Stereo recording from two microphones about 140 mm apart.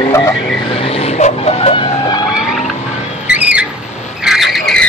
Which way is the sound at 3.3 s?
10° right (ahead or behind).